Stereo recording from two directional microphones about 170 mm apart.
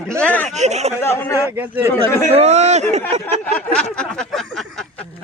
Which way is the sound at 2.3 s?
40° right (ahead or behind).